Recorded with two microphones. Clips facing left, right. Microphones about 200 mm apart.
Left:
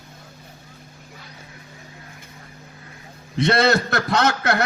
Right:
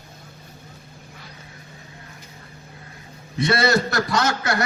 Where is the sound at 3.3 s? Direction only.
60° left (ahead or behind).